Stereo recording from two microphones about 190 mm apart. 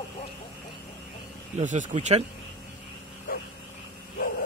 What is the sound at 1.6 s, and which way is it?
Speech, 40° right (ahead or behind).